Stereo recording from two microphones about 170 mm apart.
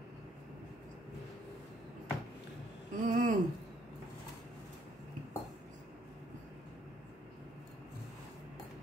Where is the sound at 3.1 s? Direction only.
50° right (ahead or behind).